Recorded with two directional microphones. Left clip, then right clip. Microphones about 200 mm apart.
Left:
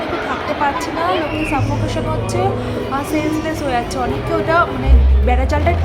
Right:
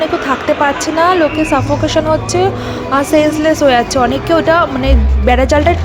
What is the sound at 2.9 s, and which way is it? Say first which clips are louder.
Speech: right 10 dB; 40° right (ahead or behind).